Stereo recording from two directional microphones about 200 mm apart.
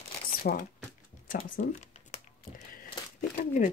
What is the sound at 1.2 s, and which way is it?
Speech, 45° left (ahead or behind).